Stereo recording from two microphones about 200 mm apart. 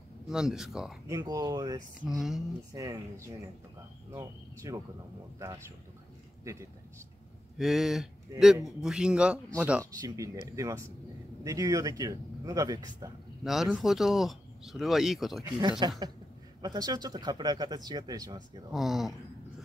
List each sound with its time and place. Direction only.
0.3 s speech: 5° right (ahead or behind)
1.0 s speech: 15° right (ahead or behind)
2.0 s speech: centre (ahead or behind)
2.7 s speech: 15° right (ahead or behind)
6.4 s a man's voice: 15° right (ahead or behind)
7.5 s speech: centre (ahead or behind)
9.8 s speech: 15° right (ahead or behind)
13.4 s speech: centre (ahead or behind)
15.8 s speech: 20° right (ahead or behind)
18.7 s speech: centre (ahead or behind)